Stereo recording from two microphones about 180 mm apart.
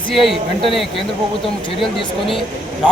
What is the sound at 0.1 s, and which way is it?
Speech, centre (ahead or behind).